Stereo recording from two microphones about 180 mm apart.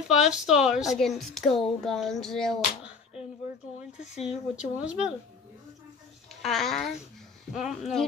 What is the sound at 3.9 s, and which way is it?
Speech, 40° left (ahead or behind).